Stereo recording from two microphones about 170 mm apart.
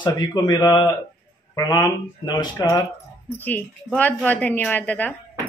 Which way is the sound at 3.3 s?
10° left (ahead or behind).